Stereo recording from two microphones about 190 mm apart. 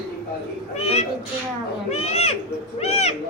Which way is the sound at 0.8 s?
35° left (ahead or behind).